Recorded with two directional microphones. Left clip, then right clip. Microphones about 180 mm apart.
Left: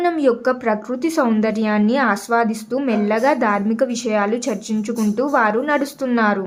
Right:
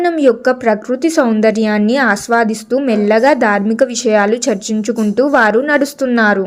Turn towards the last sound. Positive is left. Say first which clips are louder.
# right 6 dB
turn(degrees=-20)  # may be behind; listen again after turning